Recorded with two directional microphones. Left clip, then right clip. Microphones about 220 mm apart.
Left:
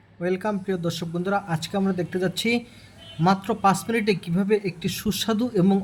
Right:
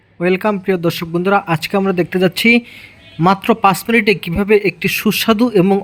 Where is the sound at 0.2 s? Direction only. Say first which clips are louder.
Right 10 dB; 25° right (ahead or behind).